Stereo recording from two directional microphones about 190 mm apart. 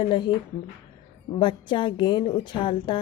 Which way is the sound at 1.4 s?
25° left (ahead or behind).